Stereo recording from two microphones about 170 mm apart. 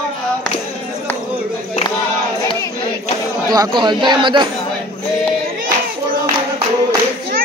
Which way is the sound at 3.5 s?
25° right (ahead or behind).